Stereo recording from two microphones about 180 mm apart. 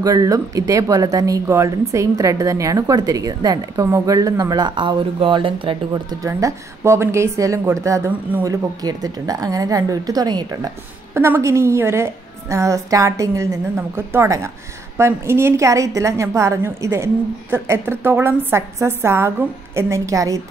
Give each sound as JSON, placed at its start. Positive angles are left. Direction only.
{"t": 0.0, "sound": "a woman's voice", "side_deg": -20}